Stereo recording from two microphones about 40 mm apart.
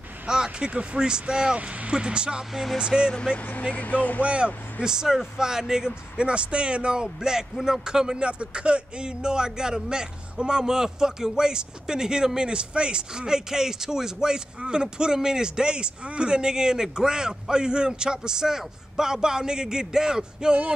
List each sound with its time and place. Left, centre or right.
0.3 s a sound: centre
0.7 s a man's voice: right
2.5 s speech: centre
2.8 s a man's voice: right
3.7 s speech: left
4.2 s a man's voice: right
4.8 s speech: centre
8.2 s a man's voice: right